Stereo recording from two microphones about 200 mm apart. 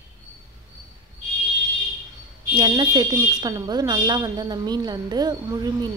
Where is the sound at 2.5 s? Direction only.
20° right (ahead or behind).